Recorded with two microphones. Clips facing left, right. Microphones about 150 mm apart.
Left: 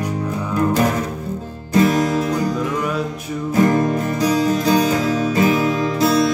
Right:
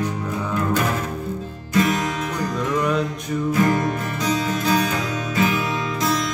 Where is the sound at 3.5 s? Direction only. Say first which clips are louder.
Left 5 dB; 35° left (ahead or behind).